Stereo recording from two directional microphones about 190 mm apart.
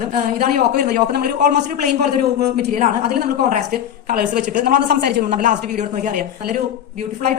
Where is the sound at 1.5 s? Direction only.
40° right (ahead or behind).